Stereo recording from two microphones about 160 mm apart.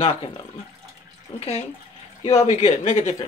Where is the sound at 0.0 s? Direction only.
35° left (ahead or behind).